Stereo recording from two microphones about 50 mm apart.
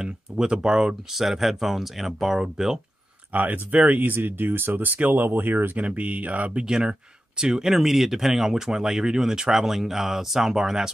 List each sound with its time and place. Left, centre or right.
0.0 s speech: centre
3.3 s speech: right
5.8 s speech: right
6.7 s speech: centre